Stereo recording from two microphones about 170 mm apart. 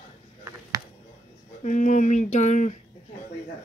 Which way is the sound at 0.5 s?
20° right (ahead or behind).